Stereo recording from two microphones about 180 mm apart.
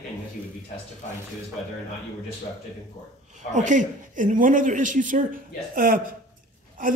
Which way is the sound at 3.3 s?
45° right (ahead or behind).